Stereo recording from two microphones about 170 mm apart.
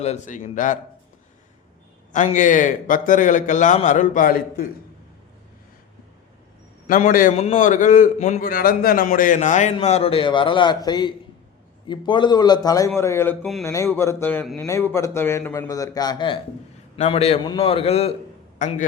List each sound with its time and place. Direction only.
0.0 s a man's voice: 45° left (ahead or behind)
2.1 s a man's voice: 45° left (ahead or behind)
6.8 s a man's voice: 55° left (ahead or behind)
7.3 s a man's voice: 40° left (ahead or behind); by 14.7 s centre (ahead or behind)
14.7 s a man's voice: 15° left (ahead or behind)
17.0 s a man's voice: 40° left (ahead or behind)